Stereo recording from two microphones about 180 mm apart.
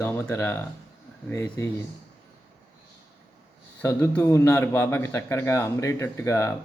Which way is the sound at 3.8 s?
15° left (ahead or behind).